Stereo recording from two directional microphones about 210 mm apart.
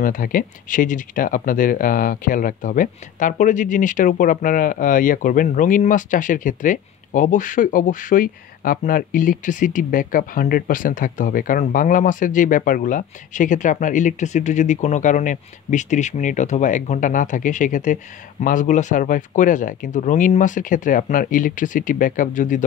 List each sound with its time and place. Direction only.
0.0 s speech: 40° left (ahead or behind)